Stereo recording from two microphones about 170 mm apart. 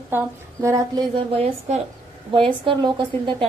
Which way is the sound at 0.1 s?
15° right (ahead or behind).